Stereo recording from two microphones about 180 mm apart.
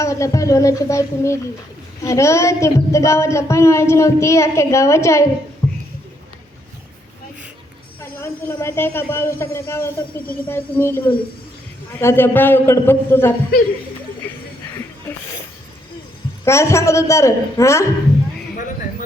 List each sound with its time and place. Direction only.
0.0 s speech: 15° left (ahead or behind)
8.2 s speech: 15° left (ahead or behind)
16.4 s speech: 15° left (ahead or behind)
18.5 s a sound: 50° left (ahead or behind)